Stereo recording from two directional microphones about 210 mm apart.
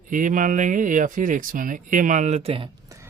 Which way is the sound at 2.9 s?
15° right (ahead or behind).